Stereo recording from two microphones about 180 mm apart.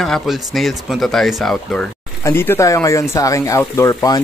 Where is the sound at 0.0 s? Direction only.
Centre (ahead or behind).